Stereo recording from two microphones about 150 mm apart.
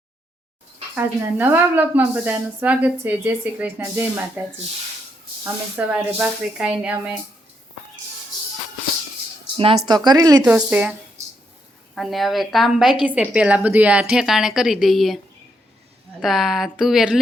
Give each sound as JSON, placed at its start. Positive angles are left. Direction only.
{"t": 0.9, "sound": "a woman's voice", "side_deg": -15}
{"t": 9.6, "sound": "speech", "side_deg": -30}
{"t": 10.4, "sound": "a woman's voice", "side_deg": -10}
{"t": 11.9, "sound": "a woman's voice", "side_deg": 0}
{"t": 16.2, "sound": "a woman's voice", "side_deg": 0}